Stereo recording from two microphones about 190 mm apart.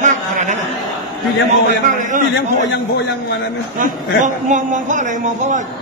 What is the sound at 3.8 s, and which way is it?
Speech, 40° right (ahead or behind).